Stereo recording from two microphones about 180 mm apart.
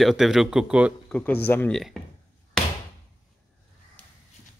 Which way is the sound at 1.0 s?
10° left (ahead or behind).